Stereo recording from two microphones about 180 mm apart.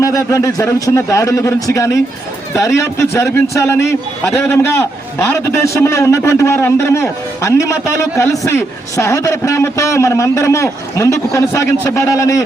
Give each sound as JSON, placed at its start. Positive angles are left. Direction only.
{"t": 0.0, "sound": "a man's voice", "side_deg": 15}